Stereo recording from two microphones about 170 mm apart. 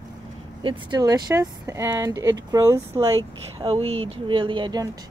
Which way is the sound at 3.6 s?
35° right (ahead or behind).